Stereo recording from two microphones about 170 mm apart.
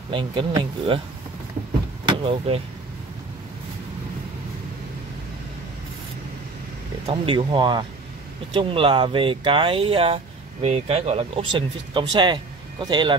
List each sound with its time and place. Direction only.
0.1 s speech: 30° right (ahead or behind)
2.0 s speech: 35° right (ahead or behind)
7.1 s speech: 30° right (ahead or behind)